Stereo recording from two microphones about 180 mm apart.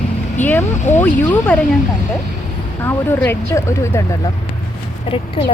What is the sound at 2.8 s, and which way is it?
Speech, 10° left (ahead or behind).